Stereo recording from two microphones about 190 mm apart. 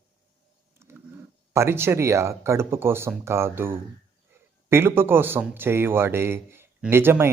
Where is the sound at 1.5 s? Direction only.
15° right (ahead or behind).